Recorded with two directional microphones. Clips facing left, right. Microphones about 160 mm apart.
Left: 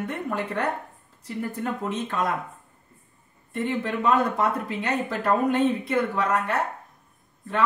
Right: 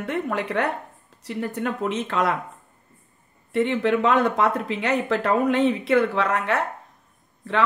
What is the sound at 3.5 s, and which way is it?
Speech, 90° right.